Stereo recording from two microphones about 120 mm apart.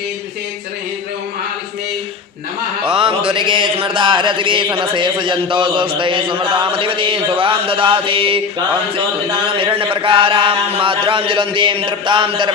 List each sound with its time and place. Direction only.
3.0 s a man's voice: 50° right (ahead or behind)
9.6 s a man's voice: 45° right (ahead or behind)